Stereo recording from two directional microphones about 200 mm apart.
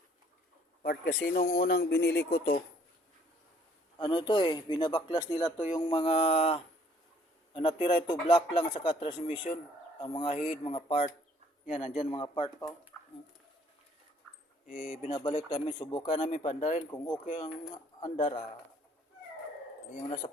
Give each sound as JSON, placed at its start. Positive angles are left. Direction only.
{"t": 0.8, "sound": "speech", "side_deg": 45}
{"t": 3.9, "sound": "speech", "side_deg": 25}
{"t": 12.9, "sound": "a sound", "side_deg": 10}
{"t": 14.7, "sound": "speech", "side_deg": 45}
{"t": 15.1, "sound": "speech", "side_deg": 25}
{"t": 16.2, "sound": "speech", "side_deg": 35}
{"t": 18.0, "sound": "speech", "side_deg": 25}
{"t": 20.2, "sound": "speech", "side_deg": 25}